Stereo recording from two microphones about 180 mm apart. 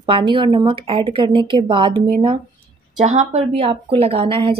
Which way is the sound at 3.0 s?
40° right (ahead or behind).